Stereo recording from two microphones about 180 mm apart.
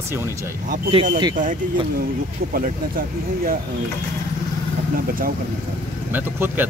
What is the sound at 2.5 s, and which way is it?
Speech, 55° right (ahead or behind).